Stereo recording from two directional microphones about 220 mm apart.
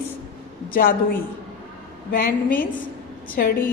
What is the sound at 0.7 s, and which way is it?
Speech, 40° left (ahead or behind).